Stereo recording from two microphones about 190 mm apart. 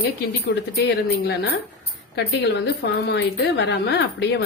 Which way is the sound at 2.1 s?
60° left (ahead or behind).